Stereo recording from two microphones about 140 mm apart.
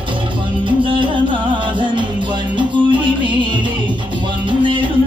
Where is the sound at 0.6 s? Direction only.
35° right (ahead or behind).